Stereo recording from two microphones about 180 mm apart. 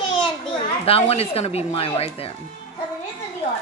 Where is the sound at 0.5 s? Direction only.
30° left (ahead or behind).